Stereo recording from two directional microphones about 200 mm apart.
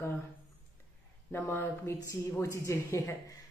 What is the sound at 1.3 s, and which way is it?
A woman's voice, 10° left (ahead or behind).